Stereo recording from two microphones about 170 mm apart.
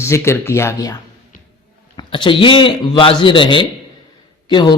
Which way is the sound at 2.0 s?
30° left (ahead or behind).